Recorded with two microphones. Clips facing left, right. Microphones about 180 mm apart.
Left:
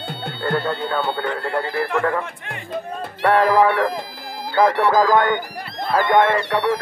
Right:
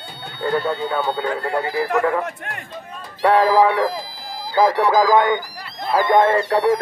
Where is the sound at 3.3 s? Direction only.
15° right (ahead or behind).